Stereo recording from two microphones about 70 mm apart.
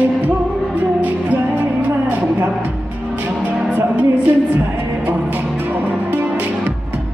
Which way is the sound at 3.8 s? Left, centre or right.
Right.